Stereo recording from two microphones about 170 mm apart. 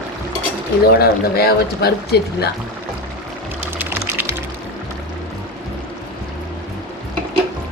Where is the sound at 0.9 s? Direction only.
65° left (ahead or behind).